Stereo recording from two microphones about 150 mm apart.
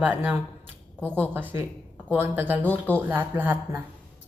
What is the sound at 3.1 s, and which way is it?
Speech, 10° right (ahead or behind).